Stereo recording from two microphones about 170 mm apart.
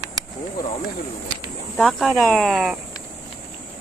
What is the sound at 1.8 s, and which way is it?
Speech, centre (ahead or behind).